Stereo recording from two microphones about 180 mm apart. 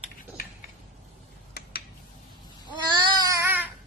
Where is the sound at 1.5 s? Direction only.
60° left (ahead or behind).